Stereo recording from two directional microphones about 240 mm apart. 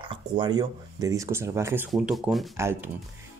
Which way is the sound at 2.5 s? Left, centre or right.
Centre.